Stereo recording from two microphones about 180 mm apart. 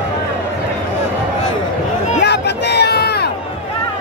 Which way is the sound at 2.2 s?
65° left (ahead or behind).